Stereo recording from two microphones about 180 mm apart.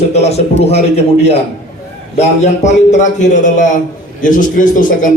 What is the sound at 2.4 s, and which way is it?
A man's voice, 40° left (ahead or behind).